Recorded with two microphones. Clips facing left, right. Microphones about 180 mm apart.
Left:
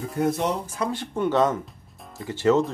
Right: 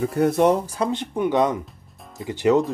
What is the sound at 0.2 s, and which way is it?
Speech, 60° right (ahead or behind).